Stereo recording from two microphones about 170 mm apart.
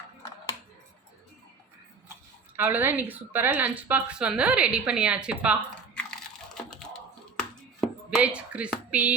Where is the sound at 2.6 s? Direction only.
10° right (ahead or behind).